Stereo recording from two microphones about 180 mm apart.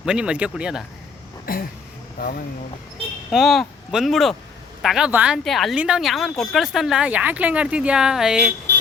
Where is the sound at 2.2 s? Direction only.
60° left (ahead or behind).